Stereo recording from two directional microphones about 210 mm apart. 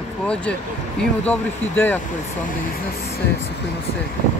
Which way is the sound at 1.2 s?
10° left (ahead or behind).